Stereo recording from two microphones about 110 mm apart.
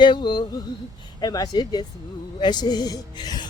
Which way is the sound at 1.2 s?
35° left (ahead or behind).